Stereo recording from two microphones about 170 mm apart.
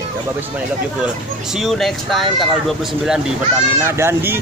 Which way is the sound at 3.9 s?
15° right (ahead or behind).